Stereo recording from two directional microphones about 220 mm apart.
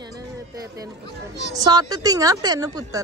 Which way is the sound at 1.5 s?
20° right (ahead or behind).